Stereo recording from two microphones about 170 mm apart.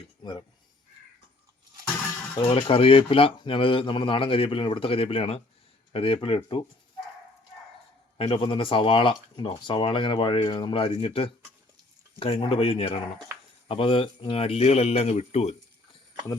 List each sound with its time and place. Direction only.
0.2 s speech: 30° left (ahead or behind)
2.6 s speech: 30° left (ahead or behind)
8.2 s speech: 30° left (ahead or behind)